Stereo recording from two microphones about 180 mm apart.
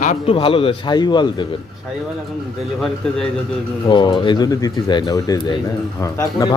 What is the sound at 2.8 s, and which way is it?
Speech, 5° left (ahead or behind).